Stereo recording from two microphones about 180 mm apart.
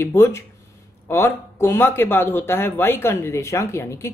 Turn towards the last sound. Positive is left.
turn(degrees=15)  # may be behind; listen again after turning